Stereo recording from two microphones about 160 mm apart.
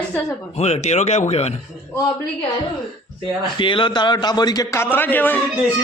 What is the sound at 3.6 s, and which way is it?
A man's voice, 30° left (ahead or behind).